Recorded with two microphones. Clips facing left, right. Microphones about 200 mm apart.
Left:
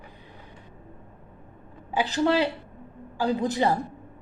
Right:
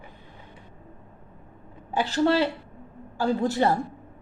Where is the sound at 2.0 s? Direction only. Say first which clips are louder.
Right 1 dB; 15° left (ahead or behind).